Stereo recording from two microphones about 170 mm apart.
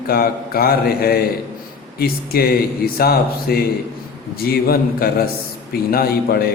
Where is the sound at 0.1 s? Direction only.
65° left (ahead or behind).